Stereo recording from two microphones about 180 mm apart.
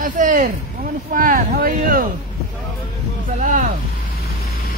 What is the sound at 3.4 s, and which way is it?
Speech, 45° right (ahead or behind).